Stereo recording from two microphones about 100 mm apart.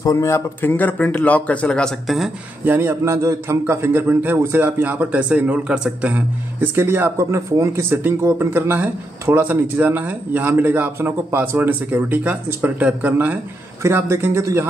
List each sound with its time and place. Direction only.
0.0 s speech: 35° left (ahead or behind); by 2.3 s centre (ahead or behind)
2.6 s speech: 20° right (ahead or behind)
3.2 s a man's voice: 30° right (ahead or behind)